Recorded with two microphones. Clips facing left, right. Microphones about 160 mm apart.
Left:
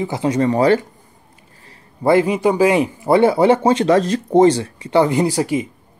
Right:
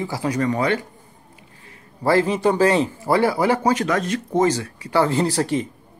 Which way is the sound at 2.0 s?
15° left (ahead or behind).